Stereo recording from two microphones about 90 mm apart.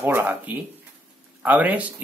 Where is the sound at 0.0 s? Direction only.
20° right (ahead or behind).